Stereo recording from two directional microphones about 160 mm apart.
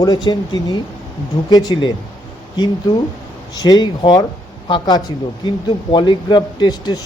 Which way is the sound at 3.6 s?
25° left (ahead or behind).